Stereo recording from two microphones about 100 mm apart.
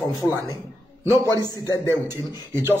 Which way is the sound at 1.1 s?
30° right (ahead or behind).